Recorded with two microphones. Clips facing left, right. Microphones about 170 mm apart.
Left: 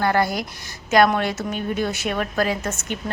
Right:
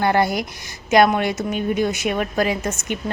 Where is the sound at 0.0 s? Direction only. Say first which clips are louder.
Right 2 dB; 20° right (ahead or behind).